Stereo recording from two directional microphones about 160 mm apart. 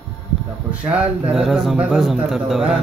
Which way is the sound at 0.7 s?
10° right (ahead or behind).